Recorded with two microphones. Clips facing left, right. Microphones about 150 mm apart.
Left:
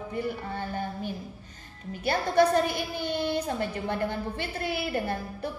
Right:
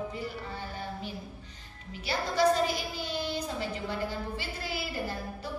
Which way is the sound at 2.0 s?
55° left (ahead or behind).